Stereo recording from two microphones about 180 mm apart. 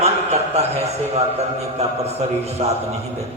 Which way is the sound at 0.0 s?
35° right (ahead or behind).